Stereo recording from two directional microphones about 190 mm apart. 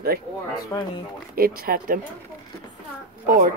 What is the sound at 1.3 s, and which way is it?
Speech, 50° right (ahead or behind).